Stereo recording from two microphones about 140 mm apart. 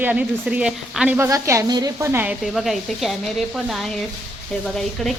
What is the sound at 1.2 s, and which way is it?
Speech, 20° right (ahead or behind).